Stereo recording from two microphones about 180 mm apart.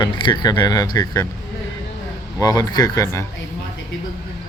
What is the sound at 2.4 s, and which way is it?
Speech, 20° left (ahead or behind).